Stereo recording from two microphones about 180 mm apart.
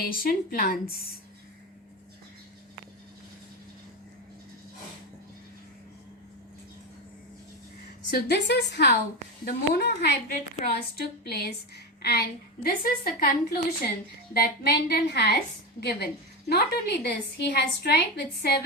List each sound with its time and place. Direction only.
0.0 s a woman's voice: 55° left (ahead or behind)
8.1 s a woman's voice: 65° left (ahead or behind)
12.6 s a woman's voice: 55° left (ahead or behind)